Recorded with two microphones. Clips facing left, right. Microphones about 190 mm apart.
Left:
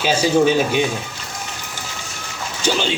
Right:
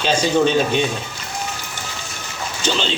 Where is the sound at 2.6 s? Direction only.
10° left (ahead or behind).